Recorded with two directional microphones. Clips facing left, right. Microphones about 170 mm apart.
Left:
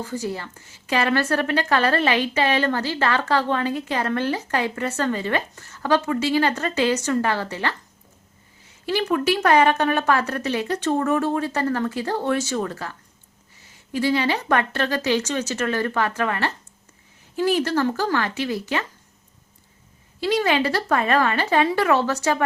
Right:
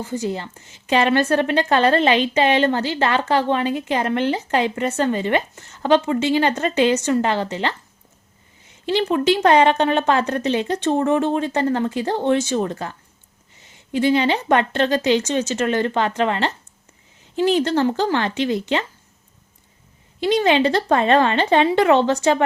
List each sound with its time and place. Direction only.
0.3 s a woman's voice: 20° right (ahead or behind)
8.9 s a woman's voice: 25° right (ahead or behind)
20.2 s a woman's voice: 25° right (ahead or behind)